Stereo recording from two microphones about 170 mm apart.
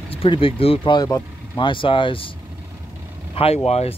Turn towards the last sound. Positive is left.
turn(degrees=40)  # may be behind; listen again after turning